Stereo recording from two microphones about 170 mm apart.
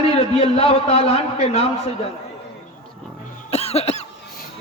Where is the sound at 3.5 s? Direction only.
35° left (ahead or behind).